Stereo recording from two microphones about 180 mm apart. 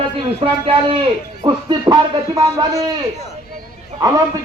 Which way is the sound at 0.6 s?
30° right (ahead or behind).